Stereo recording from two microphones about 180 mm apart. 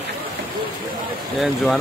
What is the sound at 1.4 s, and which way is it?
Speech, centre (ahead or behind).